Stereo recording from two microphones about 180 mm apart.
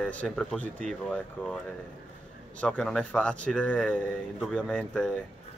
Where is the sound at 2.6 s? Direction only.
5° left (ahead or behind).